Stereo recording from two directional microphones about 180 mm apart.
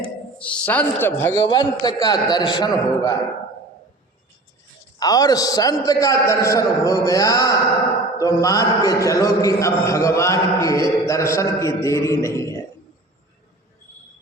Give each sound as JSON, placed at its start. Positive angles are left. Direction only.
{"t": 0.3, "sound": "a man's voice", "side_deg": 5}
{"t": 4.9, "sound": "a man's voice", "side_deg": 20}